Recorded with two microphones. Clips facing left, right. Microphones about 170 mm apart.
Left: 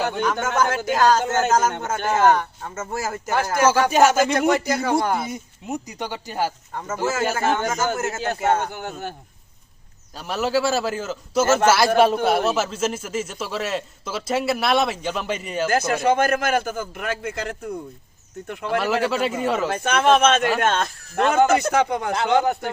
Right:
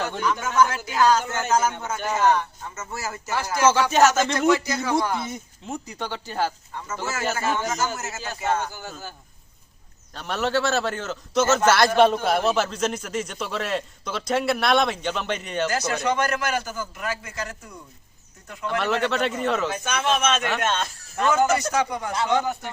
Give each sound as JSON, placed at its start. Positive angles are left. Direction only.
{"t": 0.4, "sound": "a man's voice", "side_deg": 45}
{"t": 3.9, "sound": "a man's voice", "side_deg": 10}
{"t": 4.4, "sound": "speech", "side_deg": 55}
{"t": 5.3, "sound": "a man's voice", "side_deg": 15}
{"t": 6.7, "sound": "a man's voice", "side_deg": 50}
{"t": 10.2, "sound": "a man's voice", "side_deg": 5}
{"t": 15.7, "sound": "a man's voice", "side_deg": 55}
{"t": 18.4, "sound": "speech", "side_deg": 70}
{"t": 18.8, "sound": "a man's voice", "side_deg": 5}
{"t": 19.7, "sound": "speech", "side_deg": 55}